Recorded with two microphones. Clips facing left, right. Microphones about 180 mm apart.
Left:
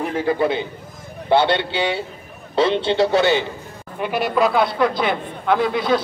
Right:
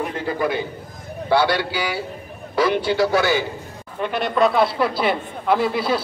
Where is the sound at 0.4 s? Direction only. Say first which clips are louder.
Left 2 dB; 25° left (ahead or behind).